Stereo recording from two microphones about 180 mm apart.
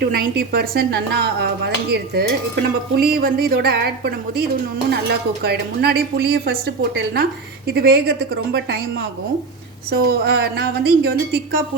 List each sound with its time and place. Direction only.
0.0 s speech: 60° right (ahead or behind)
9.9 s speech: 60° right (ahead or behind)